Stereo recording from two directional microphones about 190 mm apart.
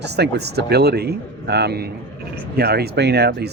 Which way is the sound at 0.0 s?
60° right (ahead or behind).